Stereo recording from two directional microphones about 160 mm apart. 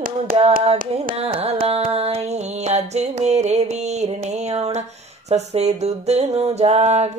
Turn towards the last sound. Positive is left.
turn(degrees=-40)  # may be behind; listen again after turning